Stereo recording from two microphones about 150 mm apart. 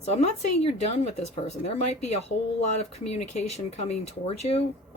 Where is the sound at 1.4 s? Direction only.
45° left (ahead or behind).